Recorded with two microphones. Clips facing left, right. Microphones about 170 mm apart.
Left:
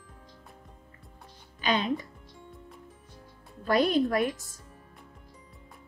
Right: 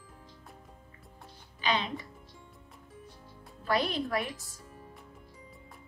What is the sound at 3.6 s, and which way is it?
Speech, 45° left (ahead or behind).